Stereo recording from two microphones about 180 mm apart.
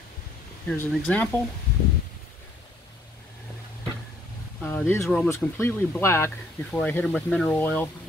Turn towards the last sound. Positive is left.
turn(degrees=10)  # may be behind; listen again after turning